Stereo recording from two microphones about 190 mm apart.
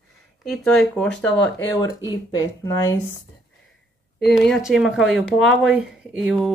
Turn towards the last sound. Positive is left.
turn(degrees=-5)  # may be behind; listen again after turning